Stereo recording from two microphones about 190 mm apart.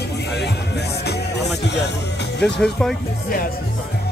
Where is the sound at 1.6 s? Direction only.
65° left (ahead or behind).